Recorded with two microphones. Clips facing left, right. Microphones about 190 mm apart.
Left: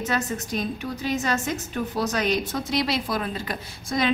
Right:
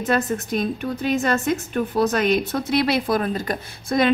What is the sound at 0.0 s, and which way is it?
A woman's voice, 55° right (ahead or behind).